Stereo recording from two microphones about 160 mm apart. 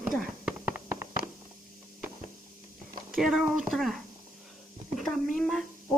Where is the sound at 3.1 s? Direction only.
Centre (ahead or behind).